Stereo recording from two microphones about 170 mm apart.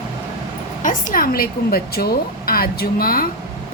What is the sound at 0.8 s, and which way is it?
A woman's voice, 50° left (ahead or behind).